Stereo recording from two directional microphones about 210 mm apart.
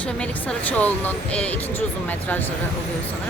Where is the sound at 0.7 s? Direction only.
10° left (ahead or behind).